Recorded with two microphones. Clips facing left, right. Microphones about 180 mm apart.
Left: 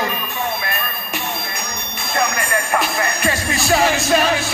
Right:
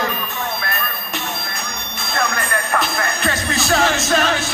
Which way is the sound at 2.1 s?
15° left (ahead or behind).